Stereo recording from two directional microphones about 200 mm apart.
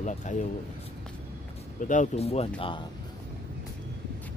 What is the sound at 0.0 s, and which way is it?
Speech, 35° left (ahead or behind).